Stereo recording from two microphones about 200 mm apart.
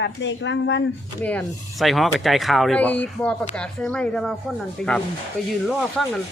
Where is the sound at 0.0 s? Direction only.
65° left (ahead or behind).